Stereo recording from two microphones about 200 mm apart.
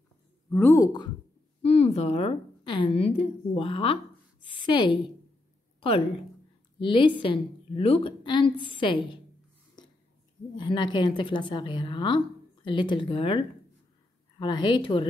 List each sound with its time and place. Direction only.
0.5 s speech: 10° left (ahead or behind)
1.6 s a woman's voice: 30° left (ahead or behind)
5.8 s a sound: 30° left (ahead or behind)
6.8 s a woman's voice: 25° left (ahead or behind)
10.5 s a woman's voice: 20° left (ahead or behind)